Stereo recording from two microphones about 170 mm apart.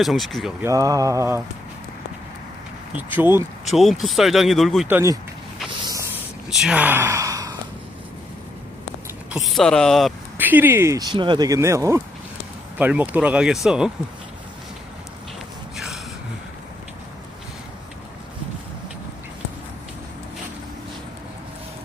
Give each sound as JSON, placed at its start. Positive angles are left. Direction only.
{"t": 0.0, "sound": "speech", "side_deg": 0}
{"t": 0.6, "sound": "speech", "side_deg": -20}
{"t": 3.2, "sound": "speech", "side_deg": -15}
{"t": 3.7, "sound": "speech", "side_deg": 0}
{"t": 4.9, "sound": "speech", "side_deg": -10}
{"t": 6.5, "sound": "speech", "side_deg": -5}
{"t": 9.3, "sound": "speech", "side_deg": 0}
{"t": 10.3, "sound": "speech", "side_deg": -10}
{"t": 15.7, "sound": "a sound", "side_deg": 0}